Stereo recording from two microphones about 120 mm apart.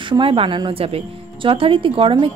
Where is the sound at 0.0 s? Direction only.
45° right (ahead or behind).